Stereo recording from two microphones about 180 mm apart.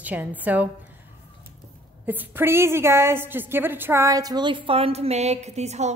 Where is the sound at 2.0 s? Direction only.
10° right (ahead or behind).